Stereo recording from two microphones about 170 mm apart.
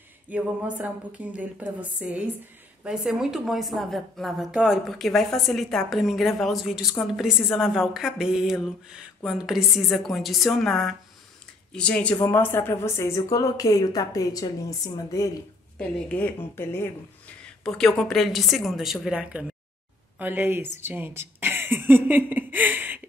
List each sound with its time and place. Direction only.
0.3 s a woman's voice: 10° right (ahead or behind); by 15.3 s 20° left (ahead or behind)
15.8 s a woman's voice: 10° left (ahead or behind); by 23.0 s 10° right (ahead or behind)